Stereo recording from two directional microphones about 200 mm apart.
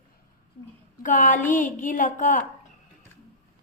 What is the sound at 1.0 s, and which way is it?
Speech, 40° left (ahead or behind).